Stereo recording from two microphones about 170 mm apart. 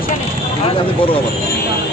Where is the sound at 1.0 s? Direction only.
30° left (ahead or behind).